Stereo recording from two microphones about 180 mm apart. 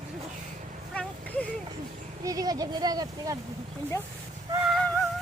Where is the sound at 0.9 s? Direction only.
5° left (ahead or behind).